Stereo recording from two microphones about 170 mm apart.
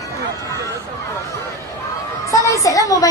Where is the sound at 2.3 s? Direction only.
20° left (ahead or behind).